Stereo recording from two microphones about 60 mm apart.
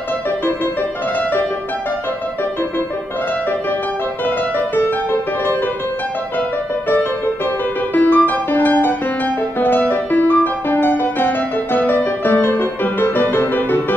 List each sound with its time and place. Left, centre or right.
7.9 s music: left